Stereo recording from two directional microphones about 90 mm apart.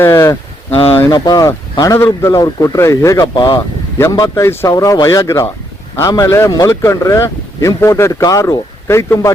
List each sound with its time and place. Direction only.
0.0 s speech: 30° left (ahead or behind)
0.8 s speech: 90° left
1.1 s speech: 45° left (ahead or behind)
3.3 s speech: 60° left (ahead or behind)
4.2 s speech: 35° left (ahead or behind)